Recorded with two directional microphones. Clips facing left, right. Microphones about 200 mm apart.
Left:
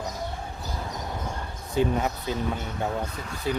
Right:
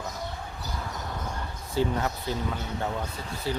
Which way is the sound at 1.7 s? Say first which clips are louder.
Left 2 dB; 15° left (ahead or behind).